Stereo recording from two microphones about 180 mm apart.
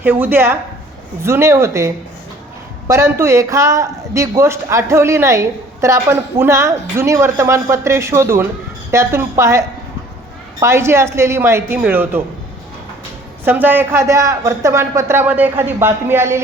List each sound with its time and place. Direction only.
0.0 s speech: 10° right (ahead or behind)
13.4 s speech: 10° right (ahead or behind)